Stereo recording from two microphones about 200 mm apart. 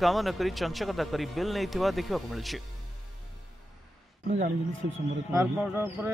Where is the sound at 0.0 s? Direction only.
Centre (ahead or behind).